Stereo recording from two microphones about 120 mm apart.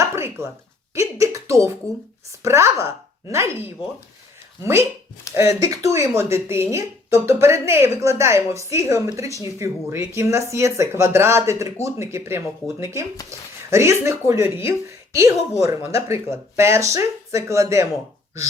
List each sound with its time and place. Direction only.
0.0 s a sound: 20° right (ahead or behind)
0.9 s a woman's voice: 25° right (ahead or behind)
4.6 s a woman's voice: 20° right (ahead or behind)